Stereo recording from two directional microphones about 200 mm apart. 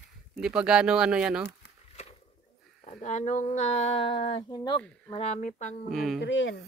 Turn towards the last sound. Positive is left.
turn(degrees=65)  # may be behind; listen again after turning